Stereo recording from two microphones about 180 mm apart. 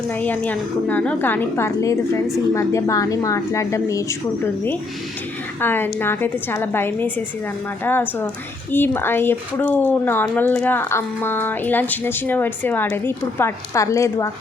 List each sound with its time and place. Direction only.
0.2 s speech: 10° left (ahead or behind)
5.5 s speech: 10° left (ahead or behind)